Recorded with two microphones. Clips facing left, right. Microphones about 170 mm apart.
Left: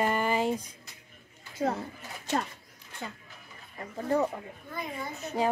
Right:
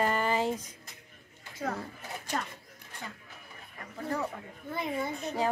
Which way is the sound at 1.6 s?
45° left (ahead or behind).